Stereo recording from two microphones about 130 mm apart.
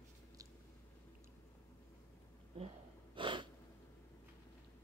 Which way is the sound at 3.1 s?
40° right (ahead or behind).